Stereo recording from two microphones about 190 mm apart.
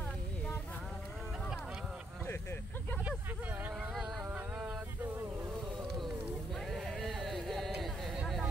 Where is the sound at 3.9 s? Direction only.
5° right (ahead or behind).